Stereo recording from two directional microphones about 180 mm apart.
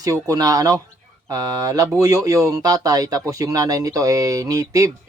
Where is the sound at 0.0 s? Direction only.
20° right (ahead or behind).